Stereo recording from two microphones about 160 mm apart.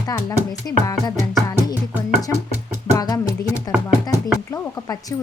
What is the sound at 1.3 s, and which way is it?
Music, 25° left (ahead or behind).